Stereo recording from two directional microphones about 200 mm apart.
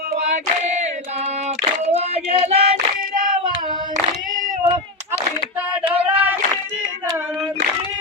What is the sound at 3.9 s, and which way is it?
Female singing, 35° right (ahead or behind).